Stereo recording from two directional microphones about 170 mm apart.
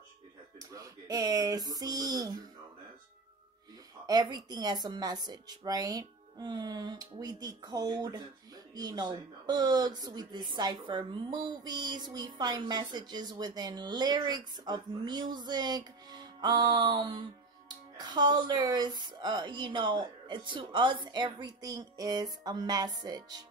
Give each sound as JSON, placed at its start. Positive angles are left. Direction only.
{"t": 0.6, "sound": "speech", "side_deg": -20}
{"t": 4.0, "sound": "speech", "side_deg": -25}